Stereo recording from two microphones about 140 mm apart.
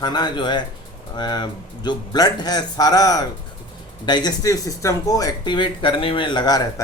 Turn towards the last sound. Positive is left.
turn(degrees=30)  # may be behind; listen again after turning